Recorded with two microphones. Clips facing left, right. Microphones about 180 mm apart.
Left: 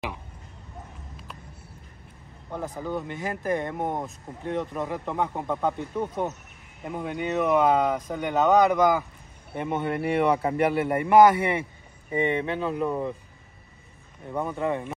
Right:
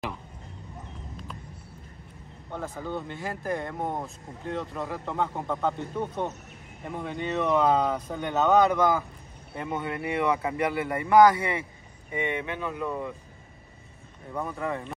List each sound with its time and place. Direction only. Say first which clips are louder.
2.5 s speech: left 2 dB; 15° left (ahead or behind)
9.6 s speech: left 4 dB; 25° left (ahead or behind)
14.3 s speech: left 4 dB; 25° left (ahead or behind)